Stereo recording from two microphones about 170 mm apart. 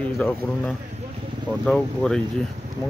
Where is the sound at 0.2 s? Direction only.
5° left (ahead or behind).